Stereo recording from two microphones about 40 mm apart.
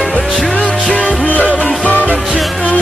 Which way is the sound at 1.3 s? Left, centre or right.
Left.